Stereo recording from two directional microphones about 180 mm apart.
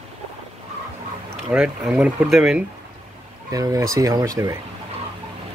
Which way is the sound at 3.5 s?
20° right (ahead or behind).